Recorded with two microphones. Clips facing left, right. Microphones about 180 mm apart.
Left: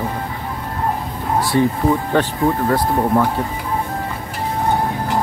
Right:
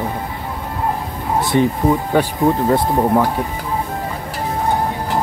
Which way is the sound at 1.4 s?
20° right (ahead or behind).